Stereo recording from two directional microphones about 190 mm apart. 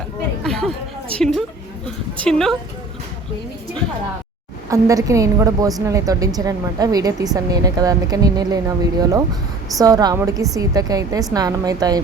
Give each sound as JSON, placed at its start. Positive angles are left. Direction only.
{"t": 0.4, "sound": "chatter", "side_deg": 0}
{"t": 2.1, "sound": "a woman's voice", "side_deg": 5}
{"t": 4.7, "sound": "a woman's voice", "side_deg": -15}